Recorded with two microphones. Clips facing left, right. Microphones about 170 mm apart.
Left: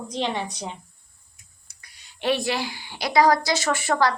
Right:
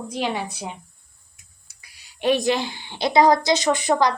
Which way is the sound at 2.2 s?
15° right (ahead or behind).